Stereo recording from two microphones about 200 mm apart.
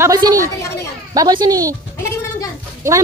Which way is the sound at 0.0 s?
15° right (ahead or behind).